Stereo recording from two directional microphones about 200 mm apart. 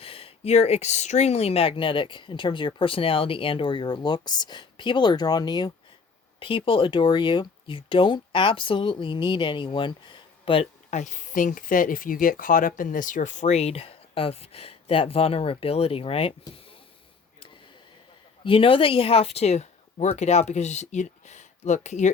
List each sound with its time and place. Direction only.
0.0 s speech: 30° left (ahead or behind)
18.4 s speech: 25° left (ahead or behind)